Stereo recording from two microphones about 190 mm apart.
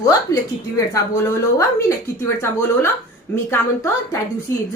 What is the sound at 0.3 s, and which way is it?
Speech, 20° left (ahead or behind).